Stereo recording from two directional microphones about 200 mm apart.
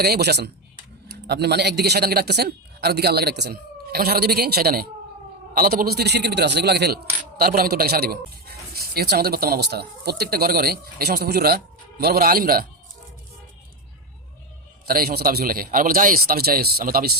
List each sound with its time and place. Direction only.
0.0 s speech: 55° right (ahead or behind)
14.8 s speech: 50° right (ahead or behind)